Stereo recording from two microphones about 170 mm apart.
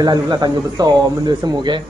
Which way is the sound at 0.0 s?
25° right (ahead or behind).